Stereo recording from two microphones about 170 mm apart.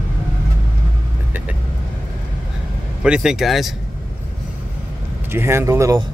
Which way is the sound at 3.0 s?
5° right (ahead or behind).